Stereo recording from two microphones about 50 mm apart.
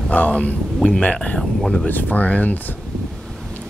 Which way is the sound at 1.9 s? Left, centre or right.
Left.